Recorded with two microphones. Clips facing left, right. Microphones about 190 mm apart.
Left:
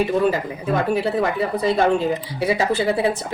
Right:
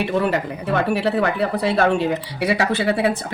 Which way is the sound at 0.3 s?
70° right (ahead or behind).